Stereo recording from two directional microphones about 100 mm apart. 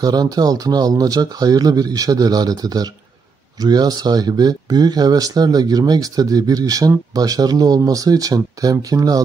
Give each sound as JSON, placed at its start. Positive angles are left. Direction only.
{"t": 0.0, "sound": "speech", "side_deg": -40}